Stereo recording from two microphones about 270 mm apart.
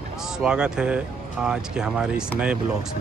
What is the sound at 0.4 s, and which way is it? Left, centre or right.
Speech, centre.